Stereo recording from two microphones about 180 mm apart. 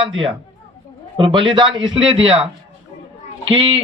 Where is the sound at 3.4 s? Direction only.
35° right (ahead or behind).